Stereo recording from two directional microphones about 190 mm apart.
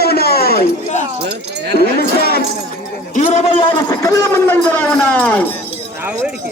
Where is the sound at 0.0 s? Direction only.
55° left (ahead or behind).